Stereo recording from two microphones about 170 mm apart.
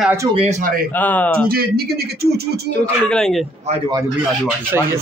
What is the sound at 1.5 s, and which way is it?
Speech, 65° right (ahead or behind).